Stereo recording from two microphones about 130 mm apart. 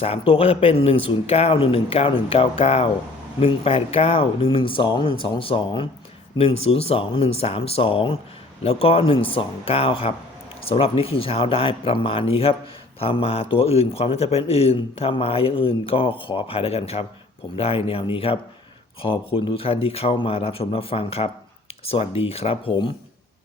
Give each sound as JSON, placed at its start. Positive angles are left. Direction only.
{"t": 0.0, "sound": "a man's voice", "side_deg": 50}